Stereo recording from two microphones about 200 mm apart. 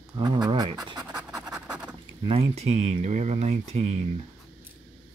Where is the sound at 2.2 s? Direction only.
30° right (ahead or behind).